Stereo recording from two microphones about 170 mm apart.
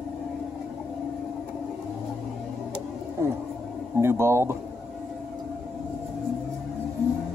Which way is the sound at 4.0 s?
15° right (ahead or behind).